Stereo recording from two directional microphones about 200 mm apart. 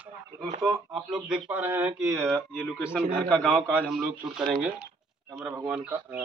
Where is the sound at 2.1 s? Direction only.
Centre (ahead or behind).